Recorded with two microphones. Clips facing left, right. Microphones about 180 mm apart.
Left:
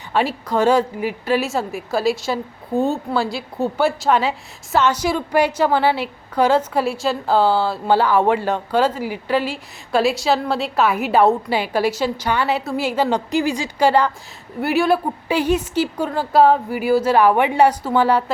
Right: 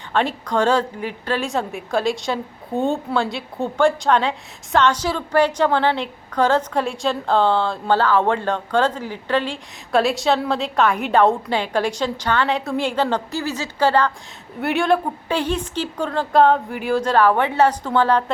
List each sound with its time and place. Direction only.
0.1 s a woman's voice: 5° left (ahead or behind)